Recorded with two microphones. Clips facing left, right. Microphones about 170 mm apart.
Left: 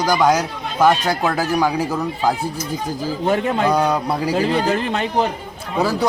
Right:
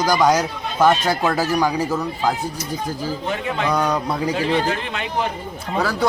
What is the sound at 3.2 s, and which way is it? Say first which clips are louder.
Speech: left 7 dB; 45° left (ahead or behind).